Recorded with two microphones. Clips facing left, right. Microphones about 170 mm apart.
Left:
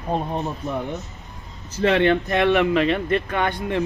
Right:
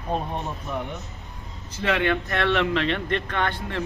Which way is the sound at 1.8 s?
30° left (ahead or behind).